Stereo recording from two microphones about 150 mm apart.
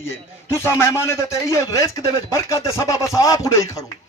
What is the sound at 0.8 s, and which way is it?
Speech, 15° left (ahead or behind).